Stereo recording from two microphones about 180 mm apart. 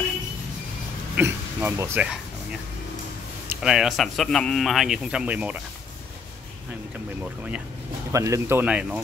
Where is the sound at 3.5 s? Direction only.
5° right (ahead or behind).